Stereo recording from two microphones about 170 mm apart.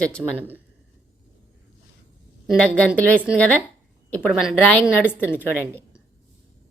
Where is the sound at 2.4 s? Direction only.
5° left (ahead or behind).